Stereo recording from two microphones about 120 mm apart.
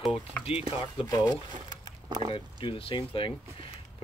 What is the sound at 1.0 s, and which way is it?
Speech, 30° left (ahead or behind).